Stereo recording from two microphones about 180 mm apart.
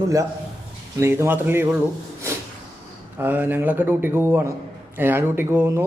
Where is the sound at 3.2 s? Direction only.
10° right (ahead or behind).